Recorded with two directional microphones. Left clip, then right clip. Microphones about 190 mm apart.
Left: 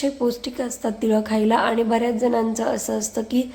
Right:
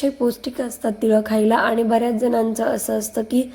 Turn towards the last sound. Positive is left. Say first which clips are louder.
# right 2 dB
turn(degrees=-20)  # may be behind; listen again after turning